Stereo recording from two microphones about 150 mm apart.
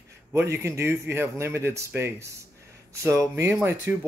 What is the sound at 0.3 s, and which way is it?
A man's voice, 20° right (ahead or behind).